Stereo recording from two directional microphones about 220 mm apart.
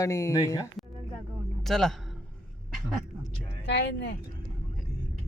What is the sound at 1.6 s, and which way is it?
Speech, centre (ahead or behind).